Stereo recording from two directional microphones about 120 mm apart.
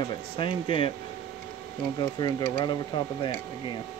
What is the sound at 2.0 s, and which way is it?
Speech, 35° left (ahead or behind).